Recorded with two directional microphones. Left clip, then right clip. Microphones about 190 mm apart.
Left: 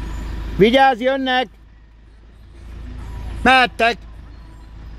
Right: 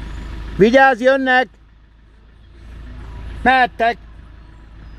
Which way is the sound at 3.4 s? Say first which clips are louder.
Even; 5° left (ahead or behind).